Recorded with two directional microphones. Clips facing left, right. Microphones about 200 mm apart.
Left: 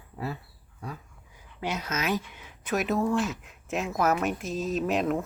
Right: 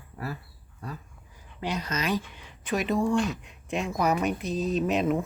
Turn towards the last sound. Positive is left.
turn(degrees=0)  # may be behind; listen again after turning